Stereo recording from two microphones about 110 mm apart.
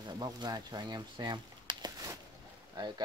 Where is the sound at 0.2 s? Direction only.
40° right (ahead or behind).